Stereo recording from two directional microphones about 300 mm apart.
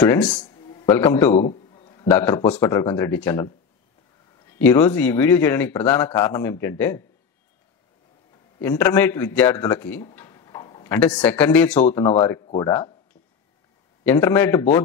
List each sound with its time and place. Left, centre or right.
0.0 s speech: centre
1.3 s a man's voice: left
4.5 s speech: centre
8.5 s speech: centre
14.0 s speech: centre